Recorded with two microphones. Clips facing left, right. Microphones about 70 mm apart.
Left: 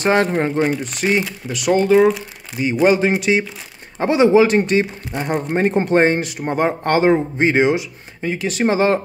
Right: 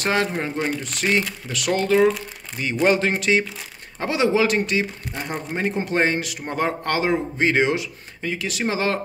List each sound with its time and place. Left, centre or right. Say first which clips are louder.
0.0 s speech: left 6 dB; left
0.6 s speech: left 6 dB; centre
4.0 s speech: left 7 dB; left